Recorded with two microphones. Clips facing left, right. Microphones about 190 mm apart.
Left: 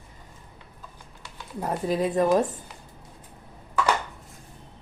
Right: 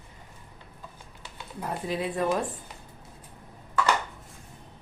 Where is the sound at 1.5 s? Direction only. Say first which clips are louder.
Left 5 dB; 40° left (ahead or behind).